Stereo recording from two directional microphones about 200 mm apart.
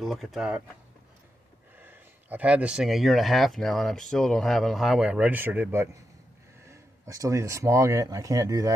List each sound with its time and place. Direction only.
0.0 s speech: centre (ahead or behind)
1.8 s speech: 10° right (ahead or behind)